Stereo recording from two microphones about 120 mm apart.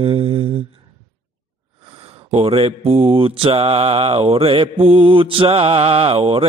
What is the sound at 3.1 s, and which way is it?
Mantra, 50° right (ahead or behind).